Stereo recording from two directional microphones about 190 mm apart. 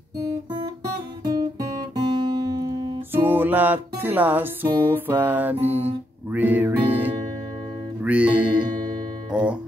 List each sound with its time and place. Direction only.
2.0 s music: 20° right (ahead or behind)
3.1 s music: 10° right (ahead or behind)